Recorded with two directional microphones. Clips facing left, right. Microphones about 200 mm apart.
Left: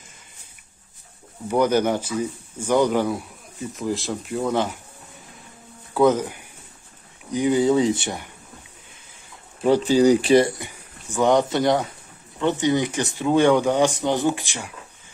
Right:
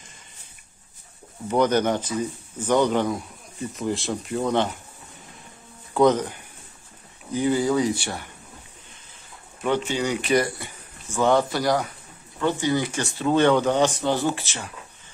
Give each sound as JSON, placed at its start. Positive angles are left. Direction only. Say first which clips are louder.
{"t": 1.5, "sound": "speech", "louder": "left 1 dB", "side_deg": 10}
{"t": 5.9, "sound": "speech", "louder": "left 1 dB", "side_deg": 5}
{"t": 7.3, "sound": "speech", "louder": "left 3 dB", "side_deg": 20}
{"t": 9.6, "sound": "speech", "louder": "left 7 dB", "side_deg": 35}
{"t": 10.6, "sound": "speech", "louder": "left 2 dB", "side_deg": 15}